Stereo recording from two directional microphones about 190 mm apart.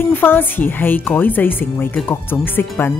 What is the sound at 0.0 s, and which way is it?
Speech, 10° left (ahead or behind).